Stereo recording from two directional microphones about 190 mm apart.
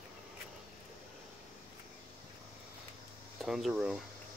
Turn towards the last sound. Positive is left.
turn(degrees=0)  # may be behind; listen again after turning